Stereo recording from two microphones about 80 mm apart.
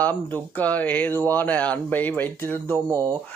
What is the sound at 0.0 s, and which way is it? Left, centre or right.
Speech, centre.